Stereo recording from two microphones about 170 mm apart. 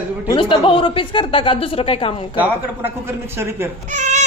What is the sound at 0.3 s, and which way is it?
Speech, 30° left (ahead or behind).